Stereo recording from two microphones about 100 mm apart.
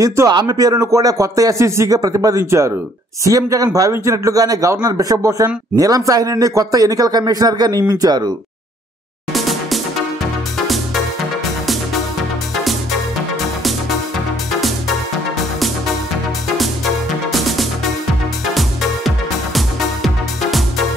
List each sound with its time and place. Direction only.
0.0 s speech: 30° right (ahead or behind)
0.3 s a man's voice: 40° right (ahead or behind)
9.3 s music: centre (ahead or behind)
16.5 s music: centre (ahead or behind)